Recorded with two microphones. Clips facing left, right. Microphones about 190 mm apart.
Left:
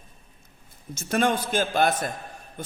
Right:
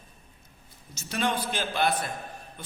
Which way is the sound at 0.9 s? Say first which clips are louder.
Left 5 dB; 50° left (ahead or behind).